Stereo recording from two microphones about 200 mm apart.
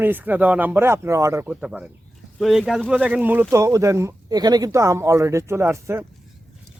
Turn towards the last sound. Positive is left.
turn(degrees=-15)  # may be behind; listen again after turning